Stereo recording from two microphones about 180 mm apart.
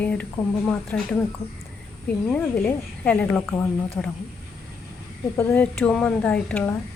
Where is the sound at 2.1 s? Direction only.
5° left (ahead or behind).